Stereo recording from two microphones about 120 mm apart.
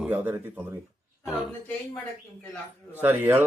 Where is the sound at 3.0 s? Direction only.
15° right (ahead or behind).